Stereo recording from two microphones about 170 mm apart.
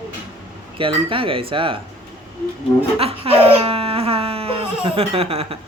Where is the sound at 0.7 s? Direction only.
30° right (ahead or behind).